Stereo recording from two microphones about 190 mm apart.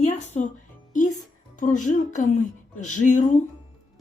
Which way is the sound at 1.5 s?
40° left (ahead or behind).